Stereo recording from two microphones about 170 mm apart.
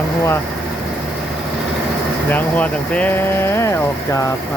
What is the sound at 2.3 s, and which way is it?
Speech, 10° left (ahead or behind).